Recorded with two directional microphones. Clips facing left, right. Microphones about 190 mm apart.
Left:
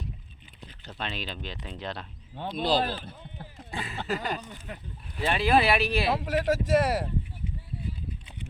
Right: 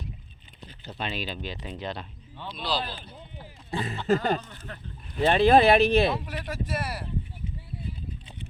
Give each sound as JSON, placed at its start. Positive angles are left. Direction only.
{"t": 0.9, "sound": "speech", "side_deg": -5}
{"t": 2.3, "sound": "speech", "side_deg": 50}
{"t": 3.7, "sound": "speech", "side_deg": -40}
{"t": 4.4, "sound": "speech", "side_deg": 10}
{"t": 5.2, "sound": "speech", "side_deg": -30}
{"t": 5.5, "sound": "speech", "side_deg": -45}
{"t": 6.1, "sound": "speech", "side_deg": 90}